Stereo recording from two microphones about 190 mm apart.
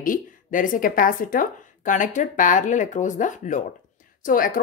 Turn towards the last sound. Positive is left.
turn(degrees=45)  # may be behind; listen again after turning